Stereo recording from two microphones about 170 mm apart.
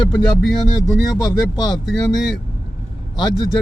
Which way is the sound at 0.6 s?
20° left (ahead or behind).